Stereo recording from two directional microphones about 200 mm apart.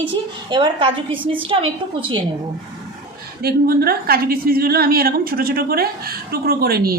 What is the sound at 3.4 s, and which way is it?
A woman's voice, 50° right (ahead or behind).